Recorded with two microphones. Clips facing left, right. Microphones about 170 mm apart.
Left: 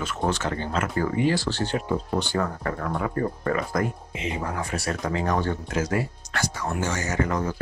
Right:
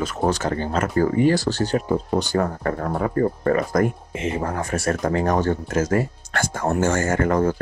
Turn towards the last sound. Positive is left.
turn(degrees=-50)  # may be behind; listen again after turning